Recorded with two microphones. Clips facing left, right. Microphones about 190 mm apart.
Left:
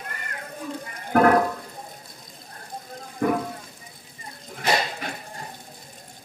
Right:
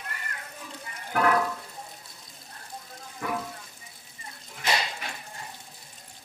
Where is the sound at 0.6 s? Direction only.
45° left (ahead or behind).